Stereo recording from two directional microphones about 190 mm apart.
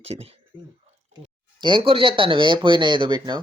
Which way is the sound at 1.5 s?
25° right (ahead or behind).